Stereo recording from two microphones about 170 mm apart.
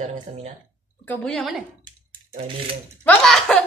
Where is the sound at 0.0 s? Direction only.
40° right (ahead or behind).